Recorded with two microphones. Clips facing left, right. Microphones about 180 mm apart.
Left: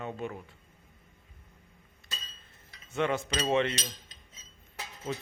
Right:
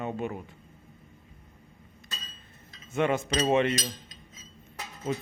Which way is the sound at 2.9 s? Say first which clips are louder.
Right 3 dB; 20° right (ahead or behind).